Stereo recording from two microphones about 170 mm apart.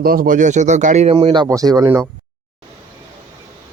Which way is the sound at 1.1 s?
30° right (ahead or behind).